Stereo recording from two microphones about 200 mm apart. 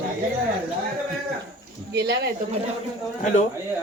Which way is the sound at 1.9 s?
55° right (ahead or behind).